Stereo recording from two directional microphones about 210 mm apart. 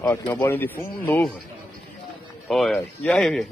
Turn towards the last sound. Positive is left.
turn(degrees=0)  # may be behind; listen again after turning